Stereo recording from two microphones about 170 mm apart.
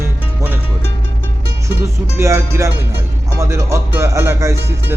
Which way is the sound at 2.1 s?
20° right (ahead or behind).